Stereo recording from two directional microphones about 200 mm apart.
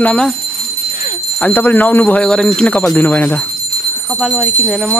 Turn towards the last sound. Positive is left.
turn(degrees=0)  # may be behind; listen again after turning